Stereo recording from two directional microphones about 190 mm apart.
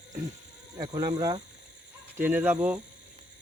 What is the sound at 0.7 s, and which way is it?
Speech, 20° right (ahead or behind).